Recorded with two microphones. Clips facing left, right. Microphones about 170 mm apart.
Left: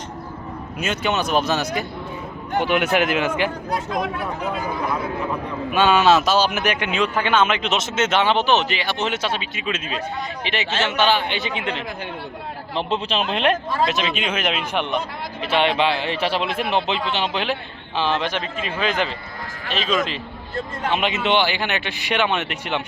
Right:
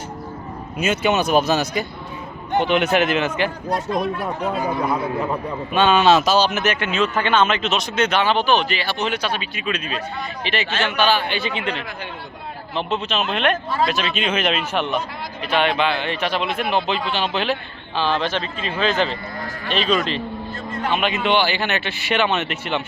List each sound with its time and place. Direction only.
0.8 s speech: 5° right (ahead or behind)
2.6 s a man's voice: 10° left (ahead or behind)
5.7 s speech: 10° left (ahead or behind)
12.9 s speech: 30° left (ahead or behind)
15.4 s a man's voice: 25° left (ahead or behind); by 20.2 s 5° left (ahead or behind)
20.9 s a man's voice: 25° left (ahead or behind)